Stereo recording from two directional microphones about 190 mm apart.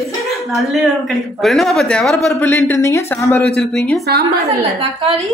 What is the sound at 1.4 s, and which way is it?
Speech, centre (ahead or behind).